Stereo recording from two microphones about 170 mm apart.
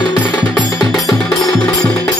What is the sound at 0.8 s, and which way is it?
Music, centre (ahead or behind).